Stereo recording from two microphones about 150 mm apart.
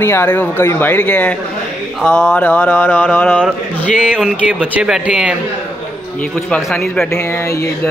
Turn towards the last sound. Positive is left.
turn(degrees=20)  # may be behind; listen again after turning